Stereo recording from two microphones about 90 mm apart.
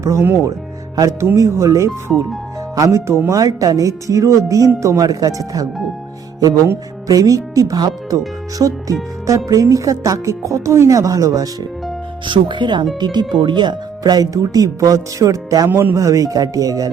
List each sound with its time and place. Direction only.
0.0 s speech: 30° right (ahead or behind)
0.9 s music: 40° right (ahead or behind)
1.4 s speech: 35° right (ahead or behind)
7.1 s speech: 40° right (ahead or behind)
12.2 s speech: 60° right (ahead or behind); by 16.0 s 25° right (ahead or behind)
16.0 s speech: 40° right (ahead or behind)